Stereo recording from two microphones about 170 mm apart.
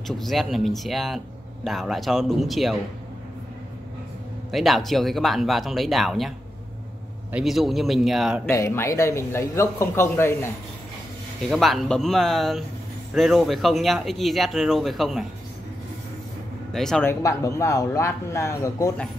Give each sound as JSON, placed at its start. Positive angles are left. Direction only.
{"t": 0.0, "sound": "speech", "side_deg": 0}
{"t": 4.5, "sound": "speech", "side_deg": 0}
{"t": 7.3, "sound": "speech", "side_deg": 0}
{"t": 8.5, "sound": "a man's voice", "side_deg": 15}
{"t": 11.5, "sound": "speech", "side_deg": 0}
{"t": 16.7, "sound": "speech", "side_deg": 0}
{"t": 17.0, "sound": "a man's voice", "side_deg": 15}